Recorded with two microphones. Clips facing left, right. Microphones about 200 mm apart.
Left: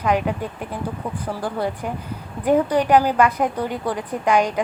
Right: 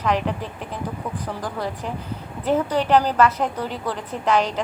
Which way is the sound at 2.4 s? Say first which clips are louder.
Left 3 dB; 10° left (ahead or behind).